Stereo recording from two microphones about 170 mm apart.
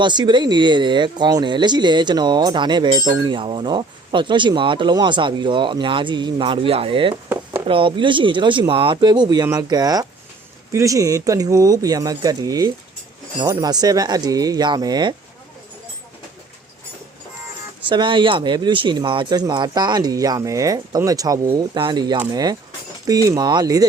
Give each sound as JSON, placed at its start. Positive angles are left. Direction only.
{"t": 0.0, "sound": "speech", "side_deg": -25}
{"t": 17.8, "sound": "speech", "side_deg": -30}